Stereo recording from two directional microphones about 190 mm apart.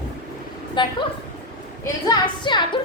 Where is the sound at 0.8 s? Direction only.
25° left (ahead or behind).